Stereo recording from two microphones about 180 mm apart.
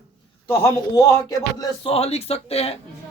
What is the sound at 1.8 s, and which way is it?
Speech, 35° left (ahead or behind).